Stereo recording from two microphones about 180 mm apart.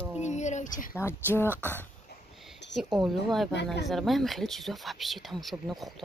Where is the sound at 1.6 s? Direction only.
10° left (ahead or behind).